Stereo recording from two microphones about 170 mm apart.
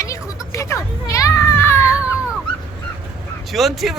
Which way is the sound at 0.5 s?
15° left (ahead or behind).